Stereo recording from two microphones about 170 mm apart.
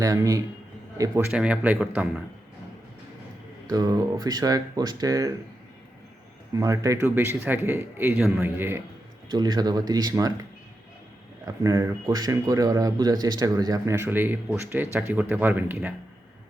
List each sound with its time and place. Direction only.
0.0 s speech: 20° right (ahead or behind)
3.7 s speech: 20° right (ahead or behind)
6.5 s speech: 20° right (ahead or behind)
9.3 s speech: 25° right (ahead or behind)
11.4 s speech: 20° right (ahead or behind)